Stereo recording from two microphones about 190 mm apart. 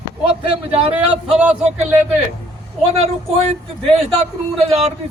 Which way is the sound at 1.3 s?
5° right (ahead or behind).